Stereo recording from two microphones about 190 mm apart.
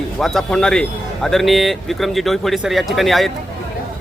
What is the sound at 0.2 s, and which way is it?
A man's voice, centre (ahead or behind).